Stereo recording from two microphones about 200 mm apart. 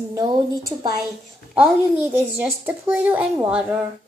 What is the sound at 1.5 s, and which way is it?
A woman's voice, 10° right (ahead or behind).